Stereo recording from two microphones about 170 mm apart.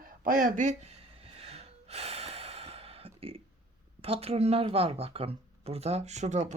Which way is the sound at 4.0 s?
35° right (ahead or behind).